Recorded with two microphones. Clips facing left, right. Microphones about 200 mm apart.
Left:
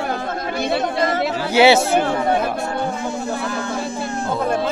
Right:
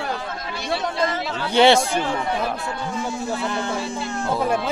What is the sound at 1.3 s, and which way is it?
Speech, 5° left (ahead or behind).